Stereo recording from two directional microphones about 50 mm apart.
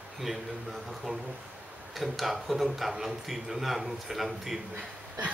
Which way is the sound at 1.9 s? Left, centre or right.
Centre.